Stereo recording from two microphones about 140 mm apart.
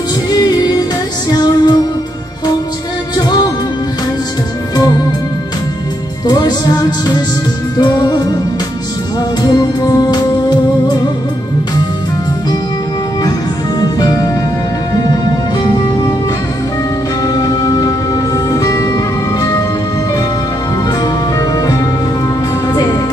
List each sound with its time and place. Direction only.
0.3 s music: 30° left (ahead or behind)
3.2 s music: 30° left (ahead or behind)
6.2 s music: 30° left (ahead or behind)
7.7 s music: 30° left (ahead or behind)
9.4 s music: 30° left (ahead or behind)
13.7 s music: 30° left (ahead or behind)
17.2 s music: 30° left (ahead or behind)
21.0 s music: 30° left (ahead or behind)